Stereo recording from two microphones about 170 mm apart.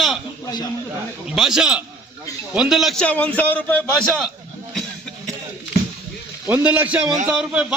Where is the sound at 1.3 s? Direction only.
5° right (ahead or behind).